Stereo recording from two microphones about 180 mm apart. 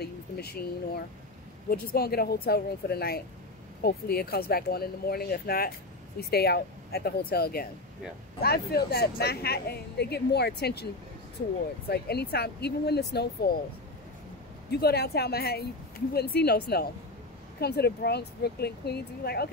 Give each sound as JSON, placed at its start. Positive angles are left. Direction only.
{"t": 0.0, "sound": "speech", "side_deg": 60}
{"t": 11.9, "sound": "speech", "side_deg": 65}
{"t": 14.7, "sound": "speech", "side_deg": 60}